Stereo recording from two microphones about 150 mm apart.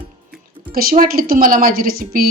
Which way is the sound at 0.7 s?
85° right.